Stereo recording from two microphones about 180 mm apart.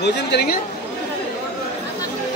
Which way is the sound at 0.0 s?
70° left (ahead or behind).